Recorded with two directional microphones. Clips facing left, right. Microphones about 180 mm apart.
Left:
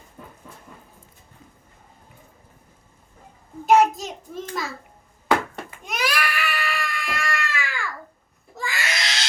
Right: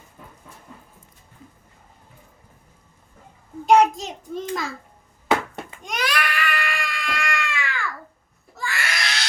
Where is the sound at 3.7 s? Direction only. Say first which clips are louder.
Right 1 dB; 5° left (ahead or behind).